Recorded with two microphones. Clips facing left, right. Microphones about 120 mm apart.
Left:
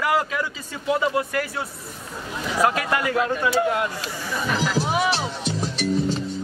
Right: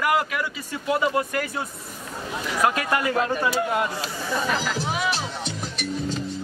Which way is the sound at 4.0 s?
30° right (ahead or behind).